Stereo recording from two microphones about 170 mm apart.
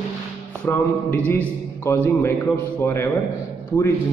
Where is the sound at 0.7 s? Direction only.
10° left (ahead or behind).